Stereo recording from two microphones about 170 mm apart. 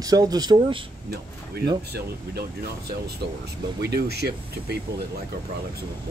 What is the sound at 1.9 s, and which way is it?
Speech, 70° right (ahead or behind).